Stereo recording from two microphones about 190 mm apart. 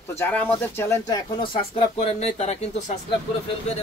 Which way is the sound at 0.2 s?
10° left (ahead or behind).